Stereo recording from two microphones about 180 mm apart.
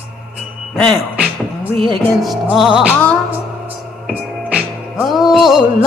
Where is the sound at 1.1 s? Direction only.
5° right (ahead or behind).